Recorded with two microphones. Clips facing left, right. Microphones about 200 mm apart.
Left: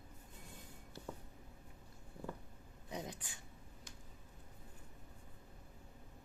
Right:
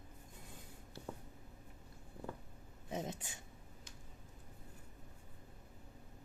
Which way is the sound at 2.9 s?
25° right (ahead or behind).